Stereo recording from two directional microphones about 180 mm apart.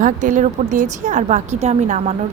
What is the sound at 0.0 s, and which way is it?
A woman's voice, 45° right (ahead or behind).